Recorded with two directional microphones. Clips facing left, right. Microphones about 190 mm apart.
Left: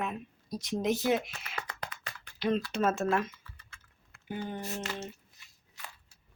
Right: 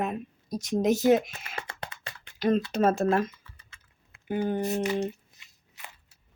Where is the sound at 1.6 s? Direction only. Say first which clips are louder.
Right 2 dB; 25° right (ahead or behind).